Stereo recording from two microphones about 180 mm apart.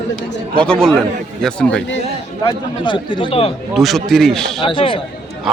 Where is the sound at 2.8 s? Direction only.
25° left (ahead or behind).